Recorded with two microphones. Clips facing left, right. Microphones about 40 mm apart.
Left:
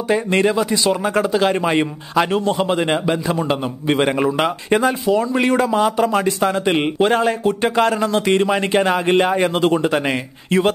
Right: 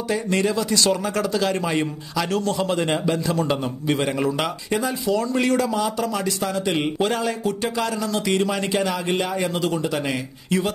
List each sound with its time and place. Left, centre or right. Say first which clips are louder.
0.1 s a man's voice: left 6 dB; left
5.1 s a man's voice: left 1 dB; left